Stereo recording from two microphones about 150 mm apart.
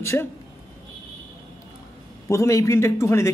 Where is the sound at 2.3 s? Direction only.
20° left (ahead or behind).